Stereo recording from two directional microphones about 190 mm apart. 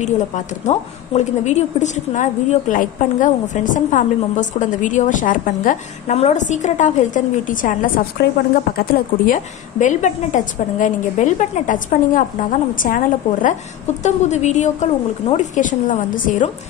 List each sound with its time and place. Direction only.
0.7 s a woman's voice: 35° left (ahead or behind)